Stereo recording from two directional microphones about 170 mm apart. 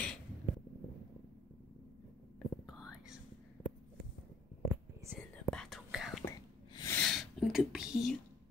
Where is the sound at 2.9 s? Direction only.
5° right (ahead or behind).